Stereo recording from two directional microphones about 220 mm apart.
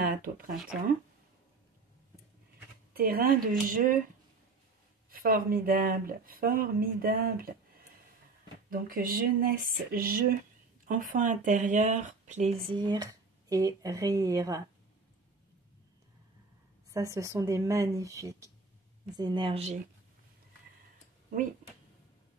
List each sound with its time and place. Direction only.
0.0 s speech: 40° right (ahead or behind)
2.9 s speech: 45° right (ahead or behind)
5.1 s speech: 40° right (ahead or behind)
8.6 s speech: 40° right (ahead or behind)
12.7 s speech: 20° right (ahead or behind)
16.9 s a woman's voice: 15° right (ahead or behind)